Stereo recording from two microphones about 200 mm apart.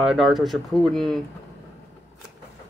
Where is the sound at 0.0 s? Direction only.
Centre (ahead or behind).